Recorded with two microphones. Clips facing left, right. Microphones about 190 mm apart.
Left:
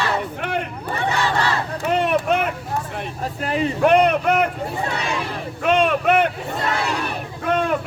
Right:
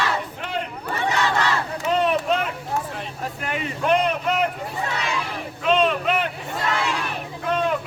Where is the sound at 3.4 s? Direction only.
35° left (ahead or behind).